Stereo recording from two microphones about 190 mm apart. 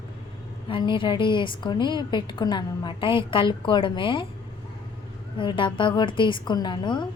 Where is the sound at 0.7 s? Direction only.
25° left (ahead or behind).